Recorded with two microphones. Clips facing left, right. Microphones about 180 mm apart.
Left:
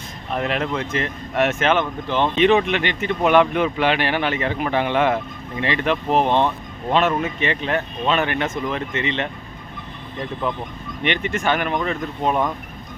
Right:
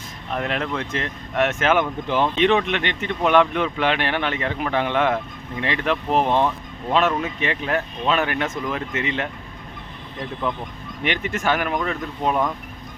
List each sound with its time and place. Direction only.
0.3 s speech: 5° left (ahead or behind)
1.8 s speech: 15° right (ahead or behind)
2.2 s speech: centre (ahead or behind)
10.4 s speech: centre (ahead or behind)